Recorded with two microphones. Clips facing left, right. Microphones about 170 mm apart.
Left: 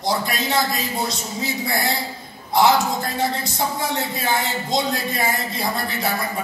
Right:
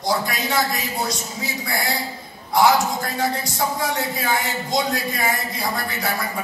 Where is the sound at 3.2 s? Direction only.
20° left (ahead or behind).